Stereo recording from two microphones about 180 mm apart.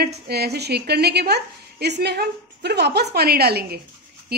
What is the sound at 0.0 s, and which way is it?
A woman's voice, 65° right (ahead or behind).